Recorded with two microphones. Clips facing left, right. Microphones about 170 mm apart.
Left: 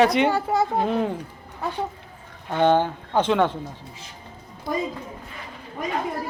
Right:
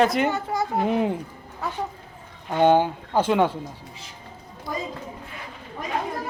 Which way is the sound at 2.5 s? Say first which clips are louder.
Right 1 dB; 10° right (ahead or behind).